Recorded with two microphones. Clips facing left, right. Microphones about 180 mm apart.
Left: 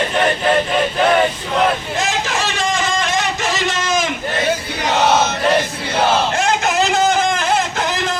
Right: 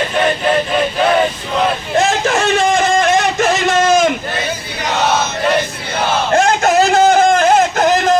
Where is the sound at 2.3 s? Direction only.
55° right (ahead or behind).